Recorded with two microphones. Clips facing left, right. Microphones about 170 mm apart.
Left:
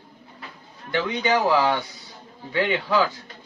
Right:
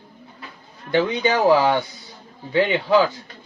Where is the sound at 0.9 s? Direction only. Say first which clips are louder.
Right 3 dB; 30° right (ahead or behind).